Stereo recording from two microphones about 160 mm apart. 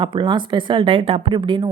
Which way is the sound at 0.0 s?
30° right (ahead or behind).